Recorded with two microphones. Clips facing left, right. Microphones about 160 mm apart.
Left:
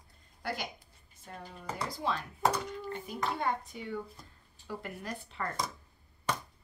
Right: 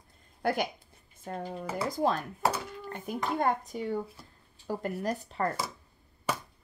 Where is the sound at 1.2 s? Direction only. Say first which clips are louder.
Right 10 dB; 50° right (ahead or behind).